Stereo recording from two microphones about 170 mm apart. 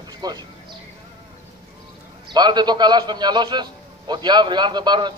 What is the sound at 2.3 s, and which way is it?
A man's voice, 25° right (ahead or behind).